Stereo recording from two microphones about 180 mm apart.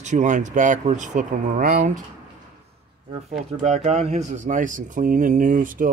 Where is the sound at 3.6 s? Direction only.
40° right (ahead or behind).